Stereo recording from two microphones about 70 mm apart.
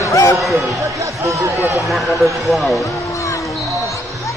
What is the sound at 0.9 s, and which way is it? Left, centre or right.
Speech, right.